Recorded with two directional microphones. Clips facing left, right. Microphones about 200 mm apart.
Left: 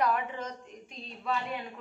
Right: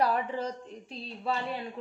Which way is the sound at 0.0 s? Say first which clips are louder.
Right 2 dB; 35° right (ahead or behind).